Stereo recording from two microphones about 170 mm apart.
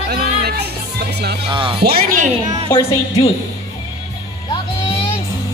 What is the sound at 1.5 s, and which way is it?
Music, 30° right (ahead or behind).